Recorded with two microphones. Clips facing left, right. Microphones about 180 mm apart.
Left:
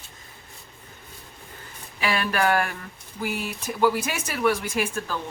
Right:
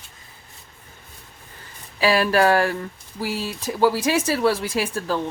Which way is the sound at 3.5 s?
30° right (ahead or behind).